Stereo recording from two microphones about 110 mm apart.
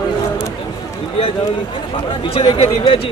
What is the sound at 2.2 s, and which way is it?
Speech, 60° left (ahead or behind).